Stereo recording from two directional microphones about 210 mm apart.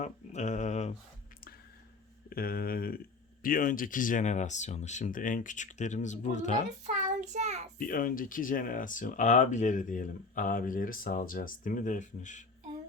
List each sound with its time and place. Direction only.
0.0 s mantra: 35° left (ahead or behind)
2.3 s speech: 45° left (ahead or behind)
6.8 s child singing: 35° right (ahead or behind)
7.8 s speech: 40° left (ahead or behind)